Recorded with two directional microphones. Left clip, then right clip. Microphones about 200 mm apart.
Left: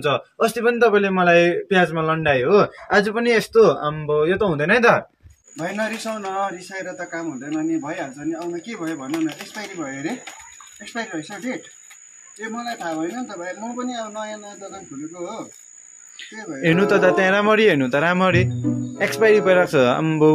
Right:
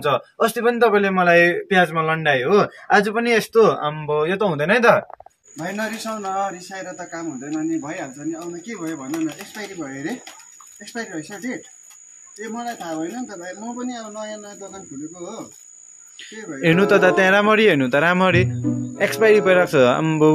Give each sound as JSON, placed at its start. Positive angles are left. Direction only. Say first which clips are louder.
{"t": 0.0, "sound": "speech", "louder": "right 1 dB", "side_deg": -5}
{"t": 13.4, "sound": "a man's voice", "louder": "left 3 dB", "side_deg": -15}
{"t": 13.7, "sound": "speech", "louder": "left 3 dB", "side_deg": 0}
{"t": 16.6, "sound": "a man's voice", "louder": "right 1 dB", "side_deg": -15}
{"t": 18.6, "sound": "a man's voice", "louder": "right 1 dB", "side_deg": 0}